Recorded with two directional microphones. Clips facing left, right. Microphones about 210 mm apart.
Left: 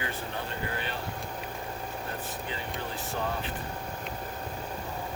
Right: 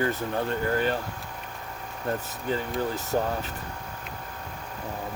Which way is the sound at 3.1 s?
45° right (ahead or behind).